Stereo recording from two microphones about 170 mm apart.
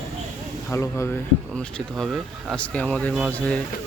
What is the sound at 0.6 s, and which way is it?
Speech, 15° left (ahead or behind).